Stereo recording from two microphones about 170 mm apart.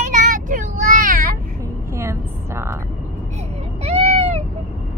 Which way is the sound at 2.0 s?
15° right (ahead or behind).